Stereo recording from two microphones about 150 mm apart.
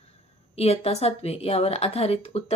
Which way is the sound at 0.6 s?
45° left (ahead or behind).